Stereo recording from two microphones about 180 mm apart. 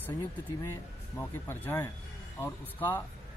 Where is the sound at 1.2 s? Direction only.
10° left (ahead or behind).